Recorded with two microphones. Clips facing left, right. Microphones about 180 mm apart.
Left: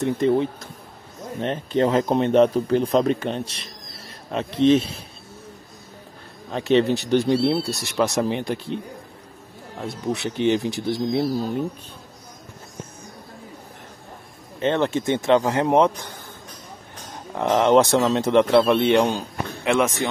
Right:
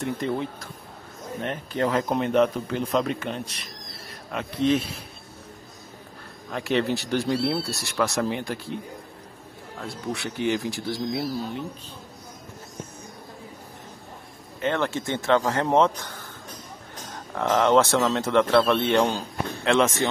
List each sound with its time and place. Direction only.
0.0 s speech: 20° left (ahead or behind)
6.5 s speech: 20° left (ahead or behind)
9.8 s speech: 20° left (ahead or behind)
14.6 s a man's voice: 20° left (ahead or behind)
17.4 s a man's voice: 20° left (ahead or behind)